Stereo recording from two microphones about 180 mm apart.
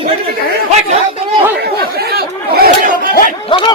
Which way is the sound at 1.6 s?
60° right (ahead or behind).